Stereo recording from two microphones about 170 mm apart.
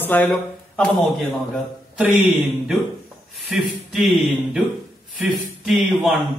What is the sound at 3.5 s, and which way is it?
Speech, centre (ahead or behind).